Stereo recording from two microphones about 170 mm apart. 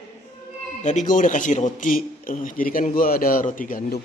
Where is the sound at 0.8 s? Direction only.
45° left (ahead or behind).